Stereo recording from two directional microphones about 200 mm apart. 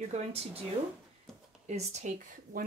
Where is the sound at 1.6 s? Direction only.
35° right (ahead or behind).